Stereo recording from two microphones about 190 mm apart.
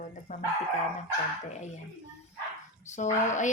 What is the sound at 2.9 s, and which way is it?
Speech, 40° left (ahead or behind).